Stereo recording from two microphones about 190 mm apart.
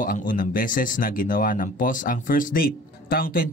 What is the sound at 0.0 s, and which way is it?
Speech, 45° left (ahead or behind).